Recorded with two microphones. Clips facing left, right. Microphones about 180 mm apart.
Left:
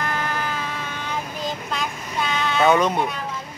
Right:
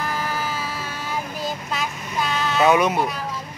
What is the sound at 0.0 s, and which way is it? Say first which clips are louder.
Child singing: even; 5° right (ahead or behind).